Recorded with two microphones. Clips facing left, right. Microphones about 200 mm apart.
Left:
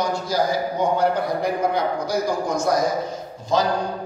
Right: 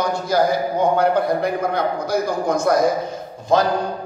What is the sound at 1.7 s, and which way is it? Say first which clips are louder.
A man's voice: right 2 dB; 55° right (ahead or behind).